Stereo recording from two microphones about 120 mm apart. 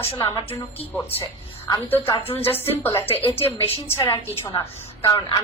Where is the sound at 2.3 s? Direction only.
20° left (ahead or behind).